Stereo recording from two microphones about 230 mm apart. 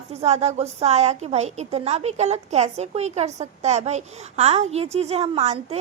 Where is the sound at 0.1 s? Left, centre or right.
Right.